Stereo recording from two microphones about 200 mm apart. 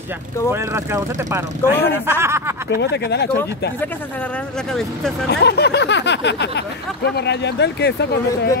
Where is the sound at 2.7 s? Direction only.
55° left (ahead or behind).